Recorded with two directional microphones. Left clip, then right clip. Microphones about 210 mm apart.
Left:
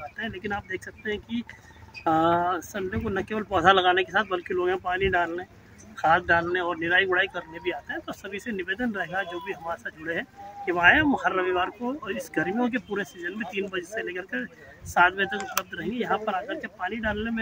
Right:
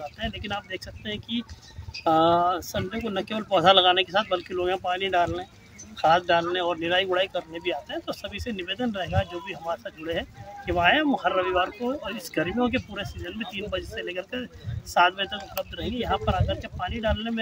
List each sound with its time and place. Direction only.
0.2 s speech: 25° right (ahead or behind)